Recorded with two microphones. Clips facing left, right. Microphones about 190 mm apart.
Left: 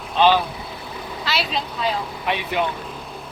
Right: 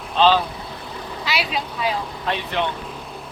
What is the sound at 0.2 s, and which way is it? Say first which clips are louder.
Speech: even; 15° left (ahead or behind).